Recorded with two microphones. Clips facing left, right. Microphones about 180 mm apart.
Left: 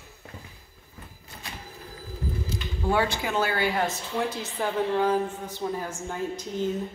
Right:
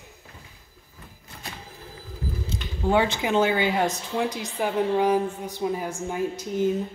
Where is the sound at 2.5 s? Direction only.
20° right (ahead or behind).